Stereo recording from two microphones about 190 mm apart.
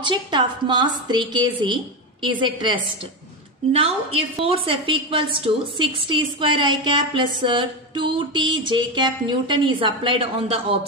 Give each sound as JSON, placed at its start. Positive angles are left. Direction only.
{"t": 0.0, "sound": "a woman's voice", "side_deg": -25}
{"t": 4.4, "sound": "a woman's voice", "side_deg": -30}